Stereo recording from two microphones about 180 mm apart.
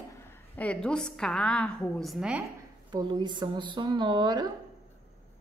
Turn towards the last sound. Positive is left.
turn(degrees=-25)  # may be behind; listen again after turning